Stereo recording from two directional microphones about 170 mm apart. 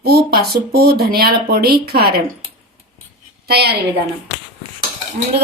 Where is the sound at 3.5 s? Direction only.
75° right (ahead or behind).